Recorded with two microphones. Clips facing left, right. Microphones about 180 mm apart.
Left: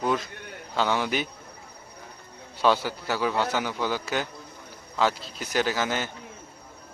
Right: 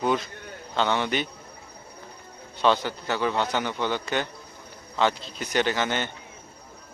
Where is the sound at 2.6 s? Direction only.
5° left (ahead or behind).